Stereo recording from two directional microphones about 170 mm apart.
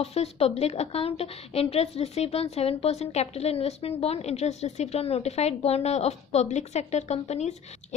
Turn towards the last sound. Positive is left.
turn(degrees=40)  # may be behind; listen again after turning